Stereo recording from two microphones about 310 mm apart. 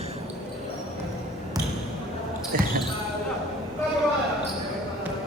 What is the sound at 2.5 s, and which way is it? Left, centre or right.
Speech, right.